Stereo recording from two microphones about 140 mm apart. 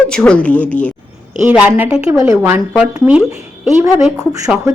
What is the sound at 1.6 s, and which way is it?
A woman's voice, 10° right (ahead or behind).